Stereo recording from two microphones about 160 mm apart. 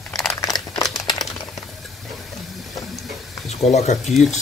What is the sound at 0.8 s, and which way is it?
Crumpling, 25° left (ahead or behind).